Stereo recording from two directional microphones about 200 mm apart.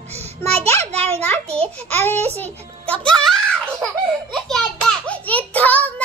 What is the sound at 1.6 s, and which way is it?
A child's voice, 10° left (ahead or behind).